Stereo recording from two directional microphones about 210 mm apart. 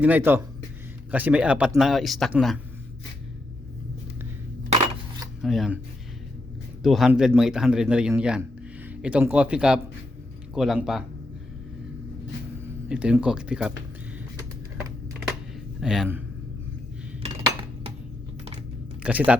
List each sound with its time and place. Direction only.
0.0 s a man's voice: 10° right (ahead or behind)
5.4 s speech: centre (ahead or behind)
6.8 s a man's voice: centre (ahead or behind)
12.9 s a man's voice: 5° right (ahead or behind)
15.8 s a man's voice: centre (ahead or behind)
17.4 s dishes: 25° right (ahead or behind)
19.0 s speech: 5° right (ahead or behind)